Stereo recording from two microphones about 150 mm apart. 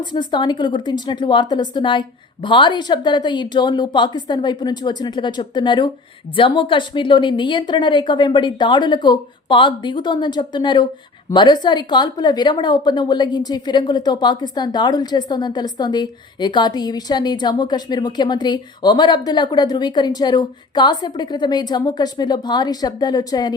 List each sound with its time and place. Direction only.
0.0 s a woman's voice: 30° left (ahead or behind)